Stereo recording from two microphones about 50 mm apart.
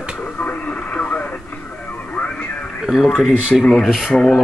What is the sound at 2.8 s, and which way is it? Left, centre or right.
Speech, centre.